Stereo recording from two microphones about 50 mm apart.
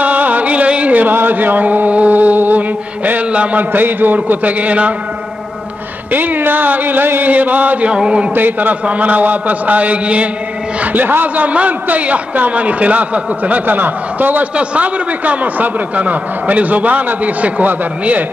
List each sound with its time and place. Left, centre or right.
0.0 s music: right
3.1 s a man's voice: right
6.1 s a man's voice: right
7.9 s a sound: right
8.4 s a man's voice: right
11.4 s a man's voice: right
14.6 s a man's voice: right